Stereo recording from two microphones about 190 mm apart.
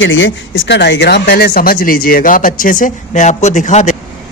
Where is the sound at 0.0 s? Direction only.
85° left.